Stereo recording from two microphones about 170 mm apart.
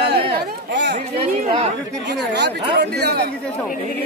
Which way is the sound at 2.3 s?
85° right.